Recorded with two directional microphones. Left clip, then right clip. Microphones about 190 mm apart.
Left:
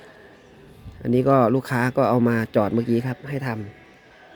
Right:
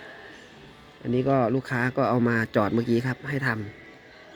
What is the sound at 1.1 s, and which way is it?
Speech, 35° left (ahead or behind).